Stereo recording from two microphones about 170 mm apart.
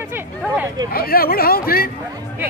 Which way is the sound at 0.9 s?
60° left (ahead or behind).